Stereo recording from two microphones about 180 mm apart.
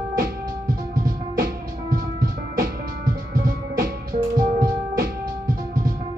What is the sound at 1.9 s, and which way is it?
Music, 55° right (ahead or behind).